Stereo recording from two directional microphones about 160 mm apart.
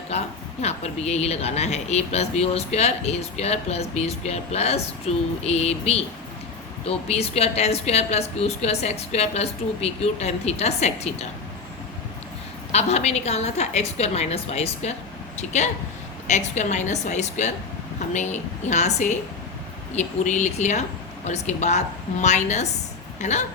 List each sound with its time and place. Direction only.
0.6 s speech: 40° left (ahead or behind)
12.7 s a woman's voice: 40° left (ahead or behind)